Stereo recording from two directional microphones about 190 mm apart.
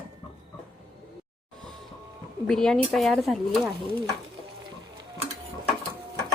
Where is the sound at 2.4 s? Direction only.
Centre (ahead or behind).